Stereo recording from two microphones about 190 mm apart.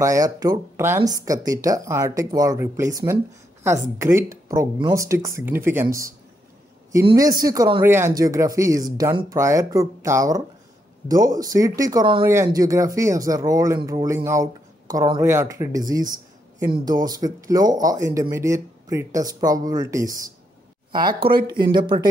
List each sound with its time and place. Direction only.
0.0 s speech: 20° right (ahead or behind)
21.5 s speech: 25° right (ahead or behind)